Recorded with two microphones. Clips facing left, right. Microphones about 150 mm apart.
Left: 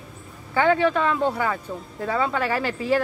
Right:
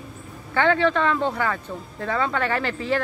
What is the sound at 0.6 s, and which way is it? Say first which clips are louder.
Speech: even; 10° left (ahead or behind).